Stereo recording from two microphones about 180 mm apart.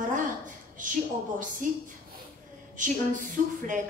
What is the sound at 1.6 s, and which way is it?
A woman's voice, 45° right (ahead or behind).